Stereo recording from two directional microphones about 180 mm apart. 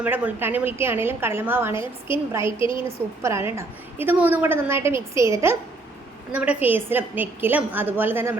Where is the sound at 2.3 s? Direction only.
15° right (ahead or behind).